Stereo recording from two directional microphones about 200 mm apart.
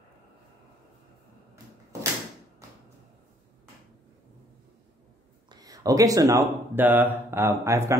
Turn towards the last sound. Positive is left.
turn(degrees=-15)  # may be behind; listen again after turning